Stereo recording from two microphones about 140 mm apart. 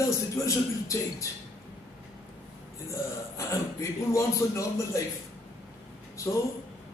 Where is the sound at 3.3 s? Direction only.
20° left (ahead or behind).